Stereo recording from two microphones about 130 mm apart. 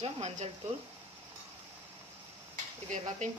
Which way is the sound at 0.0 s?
60° right (ahead or behind).